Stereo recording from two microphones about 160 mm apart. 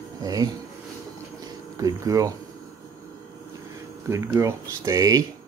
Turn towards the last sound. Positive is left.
turn(degrees=-20)  # may be behind; listen again after turning